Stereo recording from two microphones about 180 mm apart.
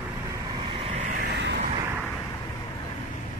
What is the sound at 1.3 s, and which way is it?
Vehicle, 75° right (ahead or behind).